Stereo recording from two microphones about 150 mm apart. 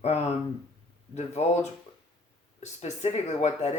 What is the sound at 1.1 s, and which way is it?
Speech, 50° left (ahead or behind).